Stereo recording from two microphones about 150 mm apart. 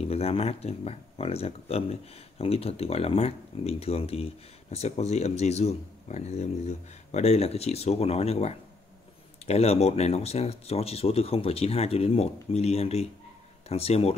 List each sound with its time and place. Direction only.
0.0 s speech: 40° left (ahead or behind)